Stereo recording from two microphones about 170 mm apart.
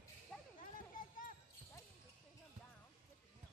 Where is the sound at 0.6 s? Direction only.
55° left (ahead or behind).